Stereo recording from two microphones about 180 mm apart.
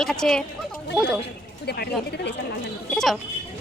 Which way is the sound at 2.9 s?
Centre (ahead or behind).